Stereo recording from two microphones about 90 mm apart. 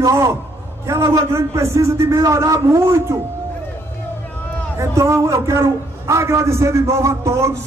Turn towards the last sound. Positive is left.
turn(degrees=-30)  # may be behind; listen again after turning